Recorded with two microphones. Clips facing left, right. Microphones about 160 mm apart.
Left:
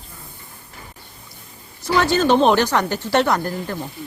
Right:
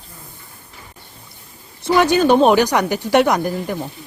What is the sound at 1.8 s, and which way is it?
Speech, 15° right (ahead or behind).